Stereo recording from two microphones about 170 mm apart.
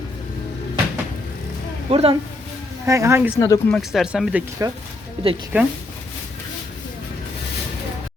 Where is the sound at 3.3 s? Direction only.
15° left (ahead or behind).